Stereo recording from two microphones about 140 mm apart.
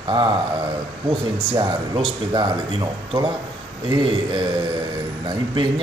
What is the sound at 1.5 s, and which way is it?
Speech, 35° right (ahead or behind).